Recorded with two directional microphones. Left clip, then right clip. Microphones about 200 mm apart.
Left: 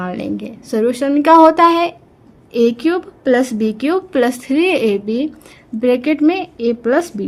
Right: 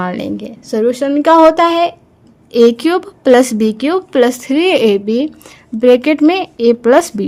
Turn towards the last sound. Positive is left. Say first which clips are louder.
# right 6 dB
turn(degrees=-35)  # may be behind; listen again after turning